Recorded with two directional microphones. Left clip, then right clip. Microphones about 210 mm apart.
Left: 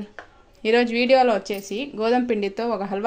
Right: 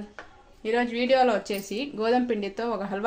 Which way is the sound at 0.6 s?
40° left (ahead or behind).